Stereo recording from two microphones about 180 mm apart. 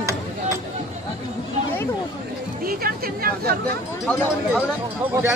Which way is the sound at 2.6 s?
55° right (ahead or behind).